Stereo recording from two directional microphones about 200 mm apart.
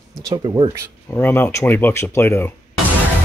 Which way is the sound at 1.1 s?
10° left (ahead or behind).